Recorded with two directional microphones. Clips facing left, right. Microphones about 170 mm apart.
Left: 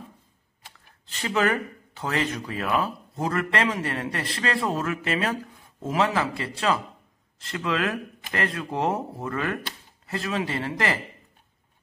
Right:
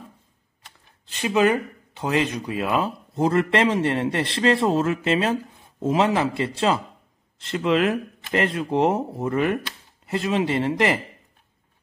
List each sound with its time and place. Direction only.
1.2 s speech: 15° right (ahead or behind)